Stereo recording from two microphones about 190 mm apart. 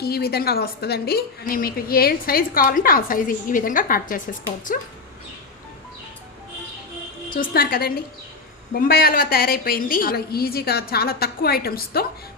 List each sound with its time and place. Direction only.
0.0 s a woman's voice: 55° left (ahead or behind)
7.3 s a woman's voice: 50° left (ahead or behind)